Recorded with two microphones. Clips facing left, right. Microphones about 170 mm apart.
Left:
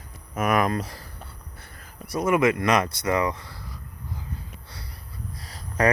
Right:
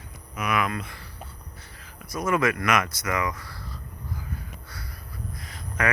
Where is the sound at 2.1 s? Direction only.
25° left (ahead or behind).